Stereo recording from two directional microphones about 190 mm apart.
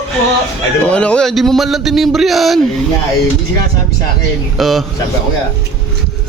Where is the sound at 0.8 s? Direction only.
5° left (ahead or behind).